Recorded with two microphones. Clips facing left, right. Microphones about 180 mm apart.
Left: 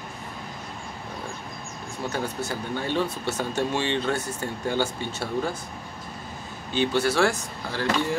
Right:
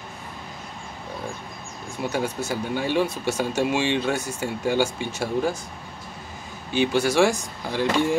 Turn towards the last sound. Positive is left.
turn(degrees=-15)  # may be behind; listen again after turning